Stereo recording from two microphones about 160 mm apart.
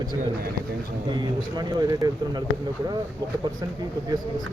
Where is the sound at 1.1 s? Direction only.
25° right (ahead or behind).